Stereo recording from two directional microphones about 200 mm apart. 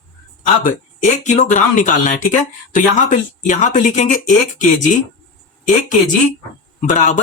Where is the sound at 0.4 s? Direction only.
40° left (ahead or behind).